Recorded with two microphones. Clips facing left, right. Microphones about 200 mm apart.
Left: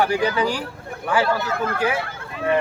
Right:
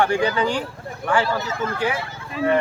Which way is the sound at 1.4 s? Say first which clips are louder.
Left 2 dB; 60° left (ahead or behind).